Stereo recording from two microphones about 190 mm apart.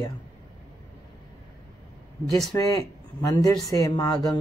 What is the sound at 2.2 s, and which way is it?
Speech, centre (ahead or behind).